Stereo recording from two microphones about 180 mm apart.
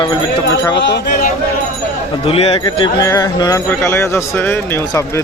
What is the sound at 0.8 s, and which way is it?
Speech, 75° left (ahead or behind).